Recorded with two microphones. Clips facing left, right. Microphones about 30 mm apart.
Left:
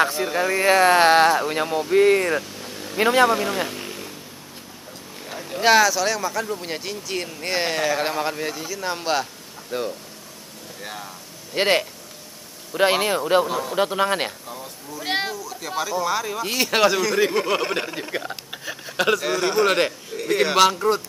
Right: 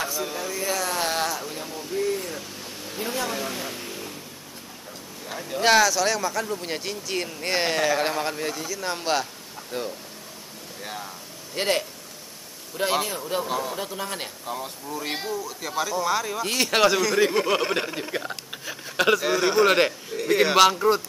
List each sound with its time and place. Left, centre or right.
0.0 s speech: left
5.4 s speech: centre
11.5 s speech: left
13.5 s speech: centre
13.7 s speech: left
14.4 s speech: centre
15.0 s speech: left
15.7 s speech: centre